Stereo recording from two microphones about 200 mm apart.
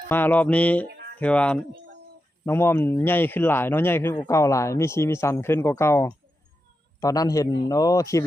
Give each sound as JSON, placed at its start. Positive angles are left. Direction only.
{"t": 0.1, "sound": "a man's voice", "side_deg": 10}